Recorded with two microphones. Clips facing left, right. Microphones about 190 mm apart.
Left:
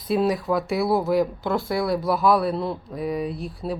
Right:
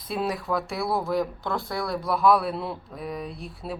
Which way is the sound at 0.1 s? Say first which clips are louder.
Left 6 dB; centre (ahead or behind).